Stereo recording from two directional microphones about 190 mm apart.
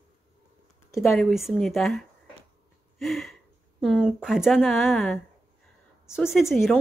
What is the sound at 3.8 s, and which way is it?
A woman's voice, 5° right (ahead or behind).